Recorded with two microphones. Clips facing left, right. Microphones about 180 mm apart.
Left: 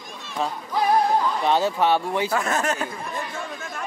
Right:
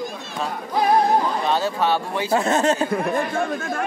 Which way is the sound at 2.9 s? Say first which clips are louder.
Right 10 dB; 60° right (ahead or behind).